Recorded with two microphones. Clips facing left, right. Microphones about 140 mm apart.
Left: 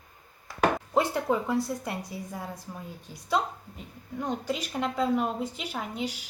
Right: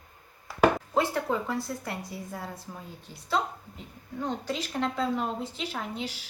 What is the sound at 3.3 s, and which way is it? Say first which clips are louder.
A woman's voice: left 1 dB; 15° left (ahead or behind).